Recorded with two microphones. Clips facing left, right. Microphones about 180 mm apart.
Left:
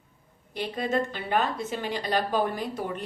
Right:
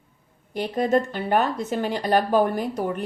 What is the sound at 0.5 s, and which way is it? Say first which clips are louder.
A woman's voice: right 6 dB; 45° right (ahead or behind).